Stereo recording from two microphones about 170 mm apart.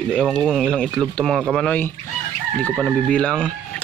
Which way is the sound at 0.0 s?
5° left (ahead or behind).